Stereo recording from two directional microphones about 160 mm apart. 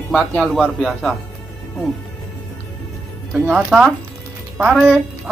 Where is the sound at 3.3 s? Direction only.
10° right (ahead or behind).